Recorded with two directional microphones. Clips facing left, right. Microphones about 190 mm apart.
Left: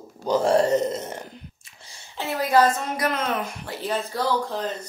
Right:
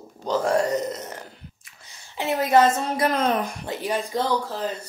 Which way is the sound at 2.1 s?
20° right (ahead or behind).